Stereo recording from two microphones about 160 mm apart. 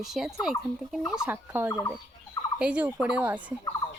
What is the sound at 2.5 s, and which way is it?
Speech, 5° right (ahead or behind).